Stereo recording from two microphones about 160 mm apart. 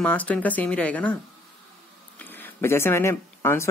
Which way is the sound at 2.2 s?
10° left (ahead or behind).